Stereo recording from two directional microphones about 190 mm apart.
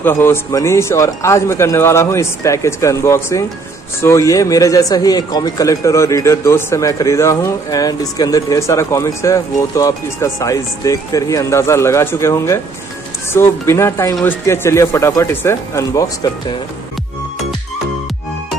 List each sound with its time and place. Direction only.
0.0 s speech: 10° left (ahead or behind)